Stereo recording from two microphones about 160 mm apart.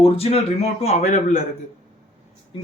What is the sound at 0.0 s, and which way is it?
A man's voice, 40° left (ahead or behind).